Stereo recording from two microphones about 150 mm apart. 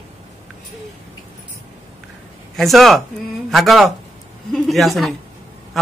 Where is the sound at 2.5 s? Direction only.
Centre (ahead or behind).